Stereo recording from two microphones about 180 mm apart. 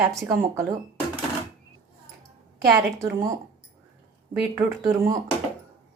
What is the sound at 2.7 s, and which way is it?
Speech, 15° right (ahead or behind).